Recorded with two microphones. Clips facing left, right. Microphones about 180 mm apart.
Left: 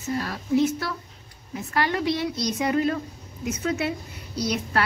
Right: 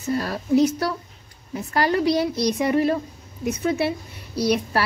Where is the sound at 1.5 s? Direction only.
35° right (ahead or behind).